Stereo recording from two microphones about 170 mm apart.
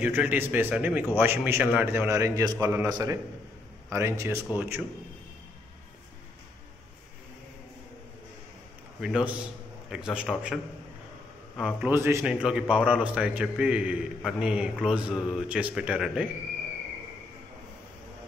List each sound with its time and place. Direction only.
0.0 s a man's voice: 10° right (ahead or behind)
9.0 s a man's voice: 5° right (ahead or behind)
11.9 s a man's voice: 15° right (ahead or behind)